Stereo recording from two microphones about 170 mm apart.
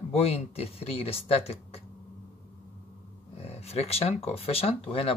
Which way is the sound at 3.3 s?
35° left (ahead or behind).